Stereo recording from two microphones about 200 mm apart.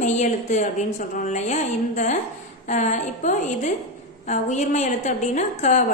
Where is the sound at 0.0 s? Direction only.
35° left (ahead or behind).